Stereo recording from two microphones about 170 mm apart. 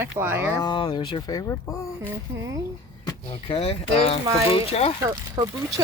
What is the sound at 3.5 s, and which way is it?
Speech, 35° left (ahead or behind).